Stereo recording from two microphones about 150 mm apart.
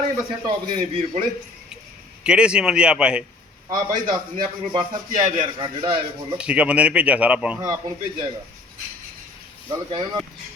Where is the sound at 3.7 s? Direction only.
25° right (ahead or behind).